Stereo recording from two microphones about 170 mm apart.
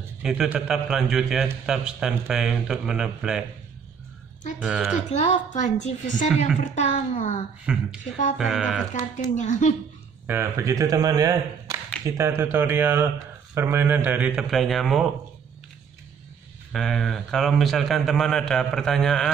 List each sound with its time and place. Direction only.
0.2 s a man's voice: 5° right (ahead or behind)
4.6 s a man's voice: 5° right (ahead or behind)
5.1 s a woman's voice: 40° left (ahead or behind)
7.7 s a man's voice: 5° right (ahead or behind)
8.9 s a woman's voice: 45° left (ahead or behind)
10.2 s a man's voice: 15° right (ahead or behind)
16.7 s a man's voice: centre (ahead or behind)